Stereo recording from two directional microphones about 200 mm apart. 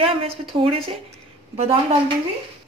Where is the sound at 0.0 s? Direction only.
25° right (ahead or behind).